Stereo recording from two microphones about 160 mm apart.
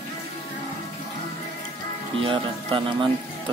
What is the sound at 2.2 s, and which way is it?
Speech, 35° right (ahead or behind).